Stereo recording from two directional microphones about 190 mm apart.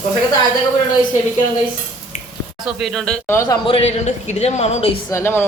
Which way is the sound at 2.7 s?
Centre (ahead or behind).